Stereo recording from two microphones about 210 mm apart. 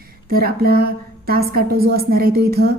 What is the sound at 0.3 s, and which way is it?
A woman's voice, 45° right (ahead or behind).